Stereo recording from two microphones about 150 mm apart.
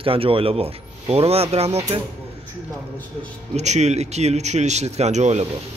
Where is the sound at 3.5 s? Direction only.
50° right (ahead or behind).